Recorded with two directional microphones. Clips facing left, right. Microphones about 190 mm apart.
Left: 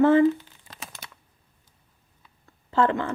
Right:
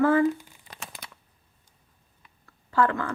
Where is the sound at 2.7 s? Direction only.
25° left (ahead or behind).